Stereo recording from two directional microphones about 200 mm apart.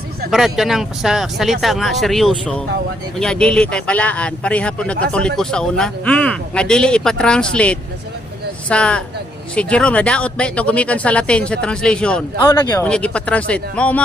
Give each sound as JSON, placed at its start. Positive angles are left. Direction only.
{"t": 0.3, "sound": "speech", "side_deg": 0}
{"t": 12.4, "sound": "speech", "side_deg": 15}
{"t": 12.8, "sound": "speech", "side_deg": 5}